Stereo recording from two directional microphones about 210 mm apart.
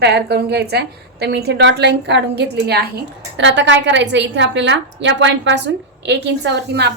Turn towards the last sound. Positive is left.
turn(degrees=-55)  # may be behind; listen again after turning